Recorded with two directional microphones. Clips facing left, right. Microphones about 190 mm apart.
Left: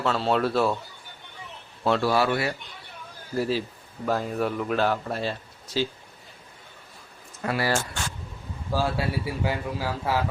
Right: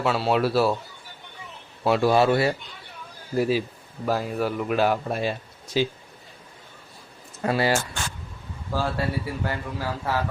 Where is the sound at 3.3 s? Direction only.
15° right (ahead or behind).